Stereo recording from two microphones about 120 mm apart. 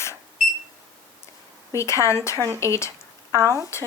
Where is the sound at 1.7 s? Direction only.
25° left (ahead or behind).